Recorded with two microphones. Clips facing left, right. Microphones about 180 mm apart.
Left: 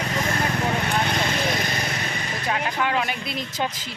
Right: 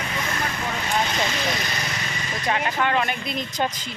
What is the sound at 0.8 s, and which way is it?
Vehicle, 60° left (ahead or behind).